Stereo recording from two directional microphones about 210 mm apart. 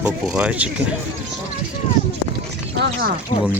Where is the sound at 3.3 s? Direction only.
40° left (ahead or behind).